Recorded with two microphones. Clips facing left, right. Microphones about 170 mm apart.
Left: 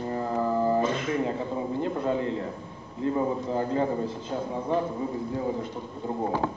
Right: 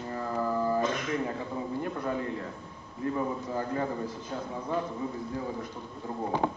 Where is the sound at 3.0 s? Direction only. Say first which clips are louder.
Left 4 dB; 25° left (ahead or behind).